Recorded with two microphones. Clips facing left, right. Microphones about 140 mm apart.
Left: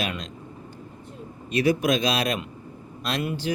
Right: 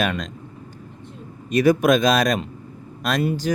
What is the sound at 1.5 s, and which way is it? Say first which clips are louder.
Speech: right 6 dB; 45° right (ahead or behind).